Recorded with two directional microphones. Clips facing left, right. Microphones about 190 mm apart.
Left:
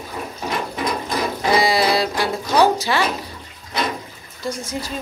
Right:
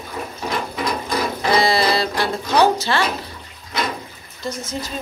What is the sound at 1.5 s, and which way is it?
A woman's voice, 10° left (ahead or behind).